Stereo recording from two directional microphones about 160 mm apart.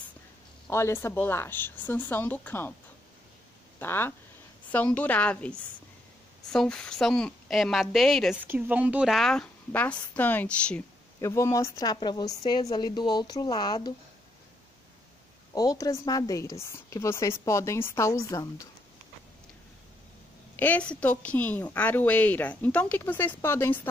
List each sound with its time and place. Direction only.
0.7 s a woman's voice: 15° left (ahead or behind)
3.8 s a woman's voice: 15° left (ahead or behind)
6.5 s a woman's voice: 5° left (ahead or behind)
8.4 s a woman's voice: 10° right (ahead or behind); by 10.8 s 10° left (ahead or behind)
11.1 s a woman's voice: 20° left (ahead or behind)
15.5 s a woman's voice: 25° left (ahead or behind)
20.5 s a woman's voice: 10° left (ahead or behind)